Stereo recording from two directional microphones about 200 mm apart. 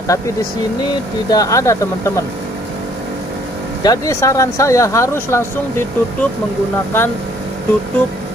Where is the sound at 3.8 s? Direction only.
15° left (ahead or behind).